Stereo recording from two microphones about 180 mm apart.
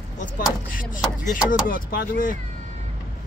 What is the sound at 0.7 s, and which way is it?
Speech, 50° left (ahead or behind).